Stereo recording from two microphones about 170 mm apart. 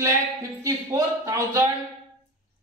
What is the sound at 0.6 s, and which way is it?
Speech, 20° right (ahead or behind).